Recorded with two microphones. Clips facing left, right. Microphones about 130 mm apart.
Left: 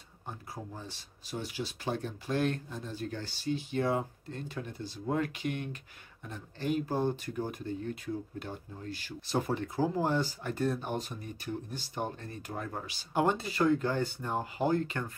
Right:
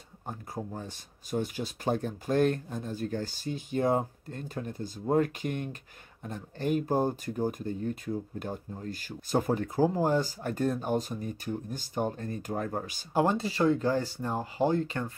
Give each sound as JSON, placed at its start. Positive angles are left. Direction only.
{"t": 0.3, "sound": "speech", "side_deg": -50}